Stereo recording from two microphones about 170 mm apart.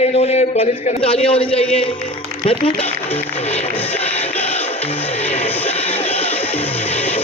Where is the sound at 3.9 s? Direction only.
10° left (ahead or behind).